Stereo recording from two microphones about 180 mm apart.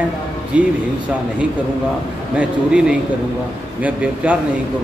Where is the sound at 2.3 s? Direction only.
5° right (ahead or behind).